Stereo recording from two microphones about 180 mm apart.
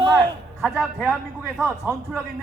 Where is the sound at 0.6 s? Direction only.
Centre (ahead or behind).